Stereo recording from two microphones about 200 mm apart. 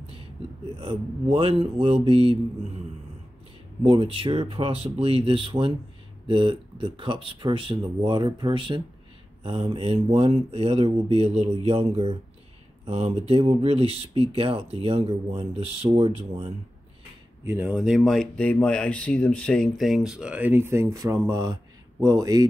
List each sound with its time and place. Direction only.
0.7 s speech: 30° right (ahead or behind)
3.8 s speech: 25° right (ahead or behind)
17.5 s speech: 10° right (ahead or behind)